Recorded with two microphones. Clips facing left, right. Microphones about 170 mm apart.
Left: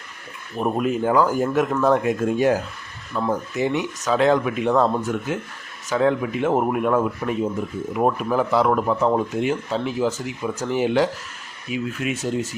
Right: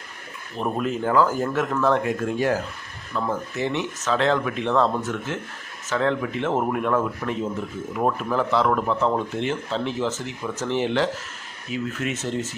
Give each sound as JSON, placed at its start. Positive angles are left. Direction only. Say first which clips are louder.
{"t": 0.5, "sound": "speech", "louder": "left 3 dB", "side_deg": 15}